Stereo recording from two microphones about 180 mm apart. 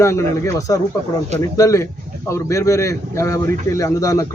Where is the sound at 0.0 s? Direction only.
15° left (ahead or behind).